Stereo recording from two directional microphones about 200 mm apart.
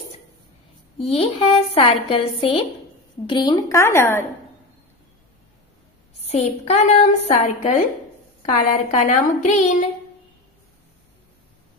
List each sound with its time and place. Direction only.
0.9 s a woman's voice: 30° left (ahead or behind); by 4.3 s 10° left (ahead or behind)
6.2 s a woman's voice: 30° left (ahead or behind)
8.9 s a woman's voice: 35° left (ahead or behind)